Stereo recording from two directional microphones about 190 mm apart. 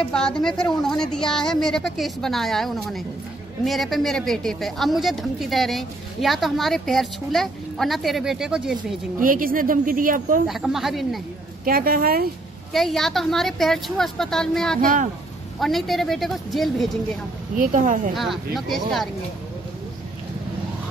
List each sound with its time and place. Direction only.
0.1 s a woman's voice: 5° left (ahead or behind)
9.2 s speech: 45° right (ahead or behind)
10.4 s a woman's voice: centre (ahead or behind)
11.6 s speech: 50° right (ahead or behind)
12.7 s a woman's voice: centre (ahead or behind)
14.8 s speech: 45° right (ahead or behind)
15.6 s a woman's voice: centre (ahead or behind)
17.6 s speech: 45° right (ahead or behind)
18.1 s a woman's voice: centre (ahead or behind)